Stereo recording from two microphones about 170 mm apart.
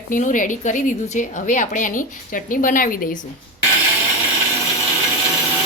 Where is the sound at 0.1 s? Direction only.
50° left (ahead or behind).